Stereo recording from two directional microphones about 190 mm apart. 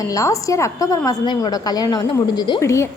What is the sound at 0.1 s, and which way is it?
A woman's voice, 15° left (ahead or behind).